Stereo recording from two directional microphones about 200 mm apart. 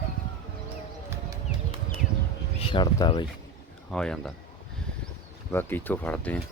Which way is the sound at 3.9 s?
5° left (ahead or behind).